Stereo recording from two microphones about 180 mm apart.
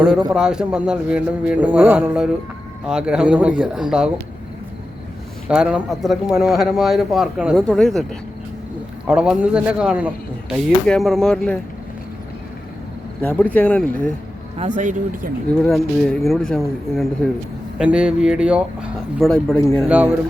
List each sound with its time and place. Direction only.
0.3 s speech: 5° right (ahead or behind)
5.5 s speech: 5° right (ahead or behind)
9.0 s speech: 5° right (ahead or behind)
13.2 s speech: 10° left (ahead or behind)
14.8 s speech: 45° right (ahead or behind)
15.7 s a man's voice: centre (ahead or behind)